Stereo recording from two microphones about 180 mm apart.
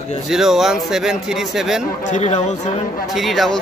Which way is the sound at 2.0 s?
40° left (ahead or behind).